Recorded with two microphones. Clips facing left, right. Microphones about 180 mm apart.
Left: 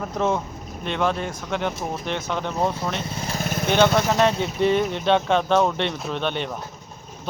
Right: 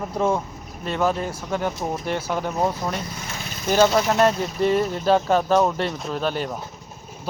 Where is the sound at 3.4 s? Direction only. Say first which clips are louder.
Even; 55° left (ahead or behind).